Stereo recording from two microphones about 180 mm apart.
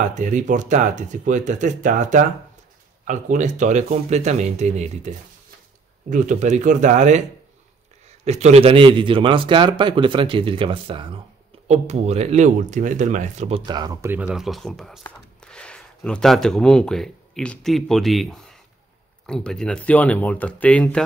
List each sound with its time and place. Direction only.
0.1 s speech: 45° right (ahead or behind)
8.3 s a man's voice: 40° right (ahead or behind)
13.7 s a man's voice: 20° right (ahead or behind)
14.1 s speech: 5° right (ahead or behind)